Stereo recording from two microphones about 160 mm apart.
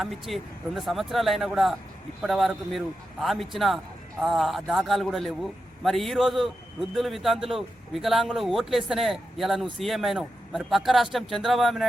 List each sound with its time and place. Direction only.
0.0 s speech: centre (ahead or behind)